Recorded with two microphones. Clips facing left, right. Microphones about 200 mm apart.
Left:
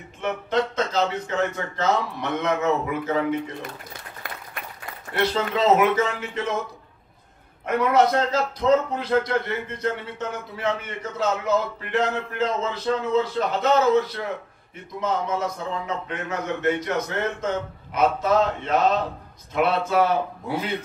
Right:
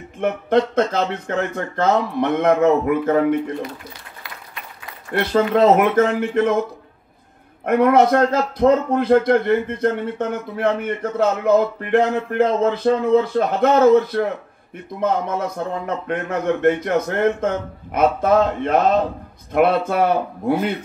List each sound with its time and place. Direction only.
0.2 s a man's voice: 55° right (ahead or behind)
5.2 s a man's voice: 55° right (ahead or behind)
7.6 s a man's voice: 55° right (ahead or behind)